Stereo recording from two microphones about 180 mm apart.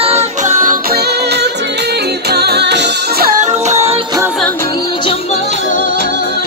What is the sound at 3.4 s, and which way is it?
Music, 40° right (ahead or behind).